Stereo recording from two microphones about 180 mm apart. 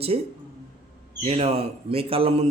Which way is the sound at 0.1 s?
35° right (ahead or behind).